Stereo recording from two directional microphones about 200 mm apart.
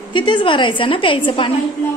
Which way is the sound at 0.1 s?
25° left (ahead or behind).